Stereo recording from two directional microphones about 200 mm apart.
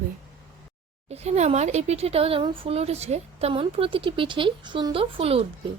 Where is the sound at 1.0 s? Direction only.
30° right (ahead or behind).